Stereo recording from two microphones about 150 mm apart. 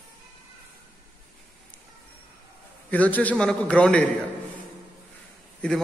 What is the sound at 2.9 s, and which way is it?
A man's voice, 10° left (ahead or behind).